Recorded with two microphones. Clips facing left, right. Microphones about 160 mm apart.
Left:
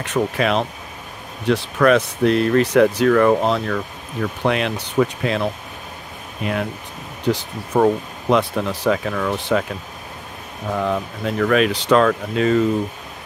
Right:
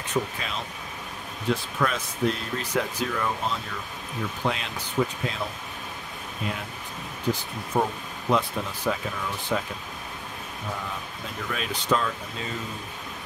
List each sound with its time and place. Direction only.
0.0 s speech: 75° left (ahead or behind)
7.2 s speech: 80° left
10.8 s speech: 75° left (ahead or behind)